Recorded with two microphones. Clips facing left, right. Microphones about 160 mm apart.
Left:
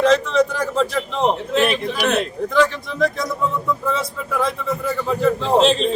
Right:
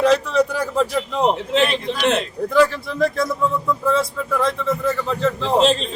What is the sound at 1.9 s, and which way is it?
Speech, 25° right (ahead or behind).